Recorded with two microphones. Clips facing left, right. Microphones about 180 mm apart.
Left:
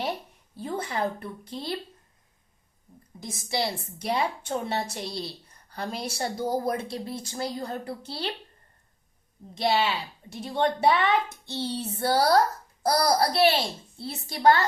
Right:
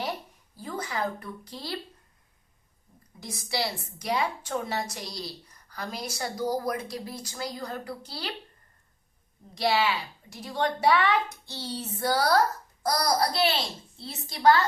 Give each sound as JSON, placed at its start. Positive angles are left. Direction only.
{"t": 0.5, "sound": "a woman's voice", "side_deg": 30}
{"t": 3.2, "sound": "a woman's voice", "side_deg": 25}
{"t": 9.6, "sound": "a woman's voice", "side_deg": 25}